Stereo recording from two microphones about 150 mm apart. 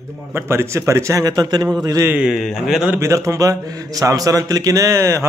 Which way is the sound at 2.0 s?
5° right (ahead or behind).